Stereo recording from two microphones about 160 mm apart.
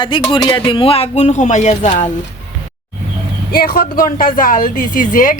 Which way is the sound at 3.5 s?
65° left (ahead or behind).